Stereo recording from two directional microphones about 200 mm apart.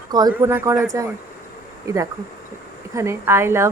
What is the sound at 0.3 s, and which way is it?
Speech, 10° right (ahead or behind).